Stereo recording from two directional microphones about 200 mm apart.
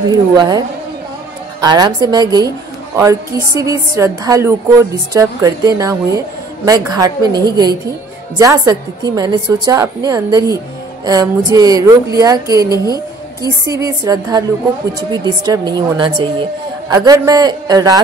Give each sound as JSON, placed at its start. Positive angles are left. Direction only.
{"t": 0.1, "sound": "a woman's voice", "side_deg": -20}